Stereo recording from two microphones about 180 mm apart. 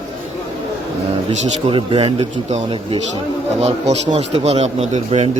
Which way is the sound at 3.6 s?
35° right (ahead or behind).